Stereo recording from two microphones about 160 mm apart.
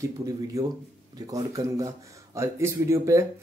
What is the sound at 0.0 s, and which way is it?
A man's voice, 20° right (ahead or behind).